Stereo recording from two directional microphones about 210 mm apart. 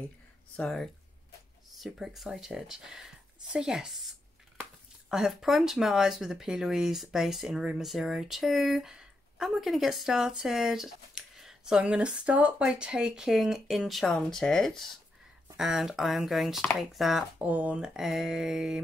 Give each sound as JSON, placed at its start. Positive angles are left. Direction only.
{"t": 0.6, "sound": "speech", "side_deg": 5}
{"t": 5.1, "sound": "speech", "side_deg": 0}